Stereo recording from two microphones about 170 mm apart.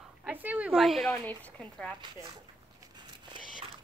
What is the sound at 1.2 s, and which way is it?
Speech, 10° left (ahead or behind).